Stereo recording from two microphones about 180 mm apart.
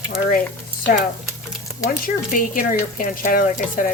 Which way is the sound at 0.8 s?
50° left (ahead or behind).